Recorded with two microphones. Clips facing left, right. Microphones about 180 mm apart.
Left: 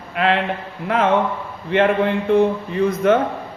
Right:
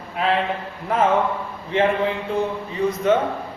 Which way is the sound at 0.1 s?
70° left (ahead or behind).